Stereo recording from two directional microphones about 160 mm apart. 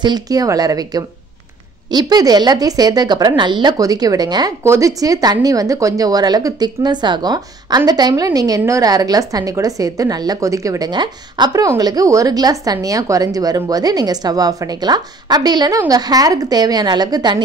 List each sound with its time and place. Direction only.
0.0 s a woman's voice: 25° right (ahead or behind)